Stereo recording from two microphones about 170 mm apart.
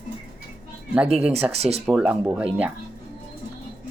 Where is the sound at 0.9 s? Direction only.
5° right (ahead or behind).